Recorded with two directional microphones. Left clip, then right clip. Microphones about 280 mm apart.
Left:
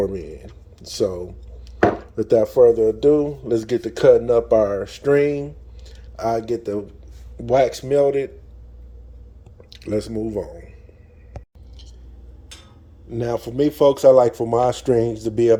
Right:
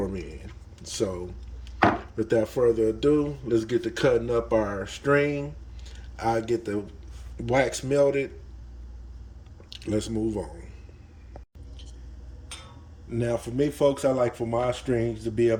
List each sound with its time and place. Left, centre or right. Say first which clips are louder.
0.1 s a sound: left 7 dB; centre
2.2 s speech: left 9 dB; centre
9.6 s speech: left 5 dB; centre
13.1 s speech: left 4 dB; centre